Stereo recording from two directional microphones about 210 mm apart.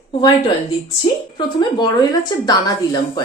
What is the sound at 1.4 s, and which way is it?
A woman's voice, 20° left (ahead or behind).